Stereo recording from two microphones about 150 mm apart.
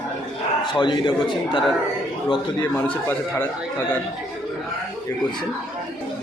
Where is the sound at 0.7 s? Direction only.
30° left (ahead or behind).